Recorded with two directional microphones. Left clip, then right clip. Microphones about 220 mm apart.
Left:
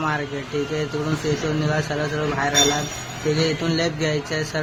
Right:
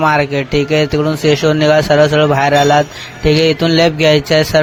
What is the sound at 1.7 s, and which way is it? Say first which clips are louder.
Speech: right 15 dB; 40° right (ahead or behind).